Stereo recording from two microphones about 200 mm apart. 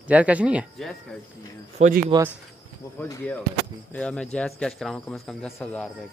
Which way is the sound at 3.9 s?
5° left (ahead or behind).